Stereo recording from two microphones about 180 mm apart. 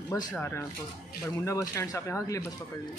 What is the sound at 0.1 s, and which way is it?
Speech, 15° left (ahead or behind).